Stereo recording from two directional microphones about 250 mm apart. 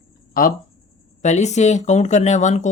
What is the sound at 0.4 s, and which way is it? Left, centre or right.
Speech, left.